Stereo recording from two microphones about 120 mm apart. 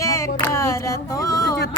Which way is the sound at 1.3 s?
30° left (ahead or behind).